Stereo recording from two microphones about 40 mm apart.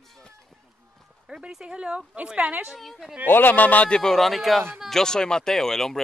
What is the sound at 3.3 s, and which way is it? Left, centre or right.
Speech, left.